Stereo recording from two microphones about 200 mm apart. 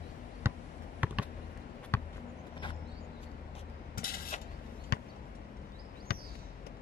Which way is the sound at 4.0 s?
45° left (ahead or behind).